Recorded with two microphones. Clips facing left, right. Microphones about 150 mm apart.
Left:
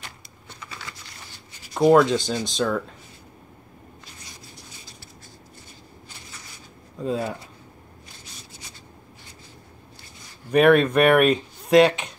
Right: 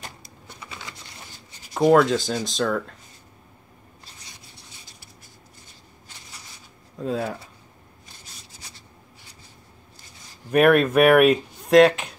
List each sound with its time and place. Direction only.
0.5 s computer keyboard: 15° right (ahead or behind)
1.7 s speech: centre (ahead or behind)
7.0 s speech: centre (ahead or behind)
10.5 s speech: 5° right (ahead or behind)